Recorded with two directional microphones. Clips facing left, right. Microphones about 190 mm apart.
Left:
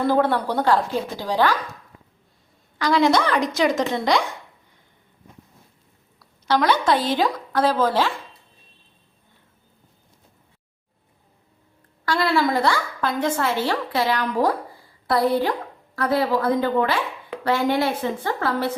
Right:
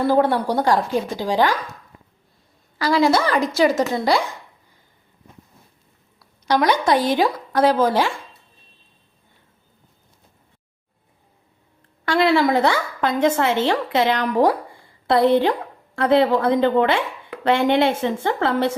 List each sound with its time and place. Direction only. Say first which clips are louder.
0.0 s speech: right 2 dB; 10° right (ahead or behind)
2.7 s a woman's voice: right 1 dB; 5° right (ahead or behind)
6.5 s speech: right 2 dB; 15° right (ahead or behind)
12.0 s speech: right 4 dB; 25° right (ahead or behind)